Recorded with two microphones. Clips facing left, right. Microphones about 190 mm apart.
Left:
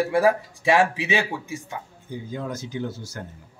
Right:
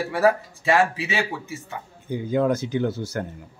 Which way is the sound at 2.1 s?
65° right (ahead or behind).